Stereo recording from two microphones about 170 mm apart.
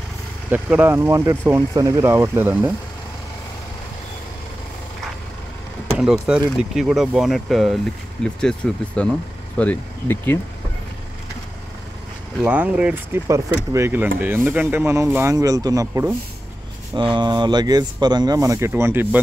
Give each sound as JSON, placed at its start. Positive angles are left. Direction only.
{"t": 0.5, "sound": "speech", "side_deg": -10}
{"t": 5.9, "sound": "speech", "side_deg": -5}
{"t": 12.4, "sound": "speech", "side_deg": -5}
{"t": 16.9, "sound": "speech", "side_deg": -25}